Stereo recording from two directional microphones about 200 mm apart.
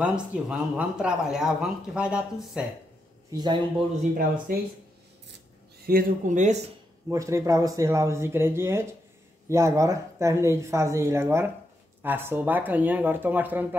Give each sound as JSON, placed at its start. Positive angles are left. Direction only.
{"t": 0.0, "sound": "speech", "side_deg": -5}
{"t": 3.3, "sound": "a man's voice", "side_deg": -20}
{"t": 4.0, "sound": "speech", "side_deg": -45}
{"t": 5.9, "sound": "speech", "side_deg": -45}
{"t": 7.1, "sound": "speech", "side_deg": -15}